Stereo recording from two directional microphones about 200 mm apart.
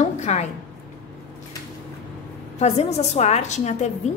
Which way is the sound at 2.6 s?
30° left (ahead or behind).